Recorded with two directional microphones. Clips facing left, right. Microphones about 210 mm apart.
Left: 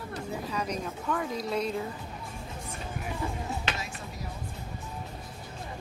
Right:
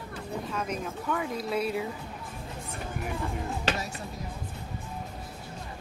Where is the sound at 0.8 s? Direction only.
5° right (ahead or behind).